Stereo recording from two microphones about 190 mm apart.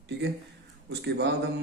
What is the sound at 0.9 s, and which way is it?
Speech, 60° right (ahead or behind).